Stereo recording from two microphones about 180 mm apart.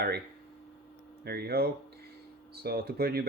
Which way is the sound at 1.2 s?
60° right (ahead or behind).